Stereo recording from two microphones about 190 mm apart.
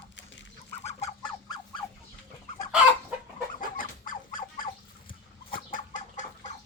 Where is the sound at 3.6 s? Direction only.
45° left (ahead or behind).